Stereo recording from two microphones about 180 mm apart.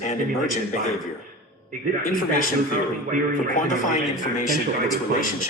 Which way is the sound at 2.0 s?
55° left (ahead or behind).